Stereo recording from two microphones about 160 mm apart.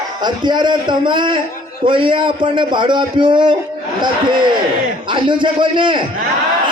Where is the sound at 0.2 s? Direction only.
30° right (ahead or behind).